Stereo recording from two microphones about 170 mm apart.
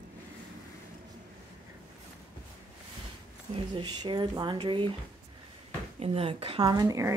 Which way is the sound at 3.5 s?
30° right (ahead or behind).